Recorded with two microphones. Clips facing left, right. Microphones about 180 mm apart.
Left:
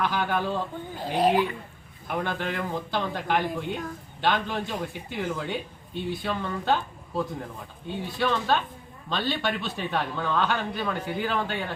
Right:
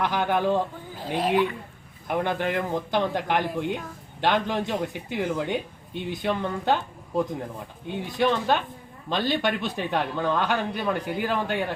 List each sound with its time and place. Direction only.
0.0 s speech: 20° right (ahead or behind)
0.9 s speech: centre (ahead or behind)
2.0 s speech: 15° right (ahead or behind)
7.9 s speech: 15° right (ahead or behind)